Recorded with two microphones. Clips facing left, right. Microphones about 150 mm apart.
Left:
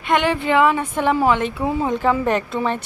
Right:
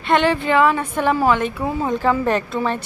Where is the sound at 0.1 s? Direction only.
15° left (ahead or behind).